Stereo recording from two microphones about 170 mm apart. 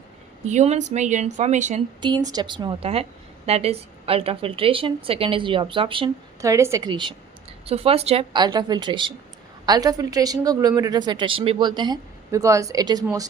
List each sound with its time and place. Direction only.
0.4 s speech: 40° right (ahead or behind)
2.0 s a woman's voice: 25° right (ahead or behind)
6.4 s a woman's voice: 20° right (ahead or behind)